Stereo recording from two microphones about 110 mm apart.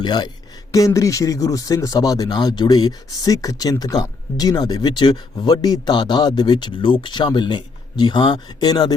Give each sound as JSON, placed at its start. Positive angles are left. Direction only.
{"t": 0.0, "sound": "speech", "side_deg": 40}
{"t": 0.7, "sound": "speech", "side_deg": 30}